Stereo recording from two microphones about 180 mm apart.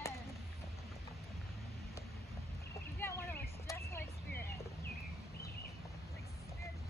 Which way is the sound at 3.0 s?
15° left (ahead or behind).